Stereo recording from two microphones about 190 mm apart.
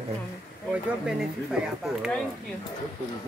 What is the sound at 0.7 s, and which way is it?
Speech, 5° right (ahead or behind).